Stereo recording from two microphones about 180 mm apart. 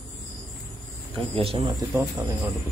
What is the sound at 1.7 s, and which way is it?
Speech, 15° right (ahead or behind).